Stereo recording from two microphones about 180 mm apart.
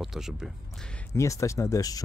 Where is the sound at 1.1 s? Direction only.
15° left (ahead or behind).